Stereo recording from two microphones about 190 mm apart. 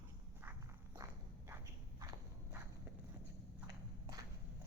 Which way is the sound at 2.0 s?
15° right (ahead or behind).